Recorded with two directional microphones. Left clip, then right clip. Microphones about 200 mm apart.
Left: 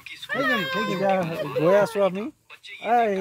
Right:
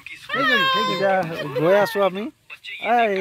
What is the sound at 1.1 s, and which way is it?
Speech, 35° right (ahead or behind).